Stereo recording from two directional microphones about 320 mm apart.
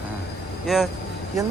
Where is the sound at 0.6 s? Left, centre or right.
Centre.